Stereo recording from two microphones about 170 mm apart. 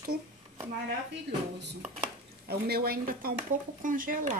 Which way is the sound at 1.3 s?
80° right.